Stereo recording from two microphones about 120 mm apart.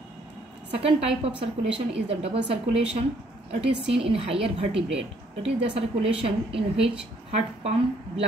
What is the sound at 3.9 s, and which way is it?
A woman's voice, 50° right (ahead or behind).